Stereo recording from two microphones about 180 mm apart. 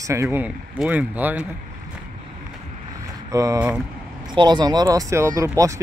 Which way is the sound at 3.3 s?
20° right (ahead or behind).